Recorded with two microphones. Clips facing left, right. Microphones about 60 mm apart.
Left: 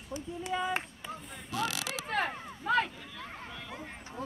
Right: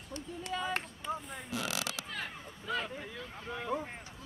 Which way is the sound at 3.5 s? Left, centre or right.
Right.